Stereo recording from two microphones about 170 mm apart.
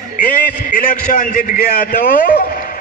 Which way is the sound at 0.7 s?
50° left (ahead or behind).